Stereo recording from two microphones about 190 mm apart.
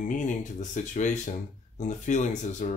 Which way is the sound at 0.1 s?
40° left (ahead or behind).